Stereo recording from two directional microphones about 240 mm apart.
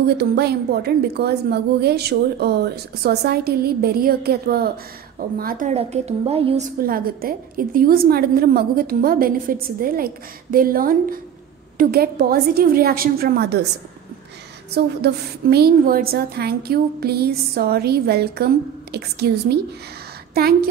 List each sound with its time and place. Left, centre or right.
0.2 s a woman's voice: right
6.8 s a woman's voice: right
14.7 s a woman's voice: right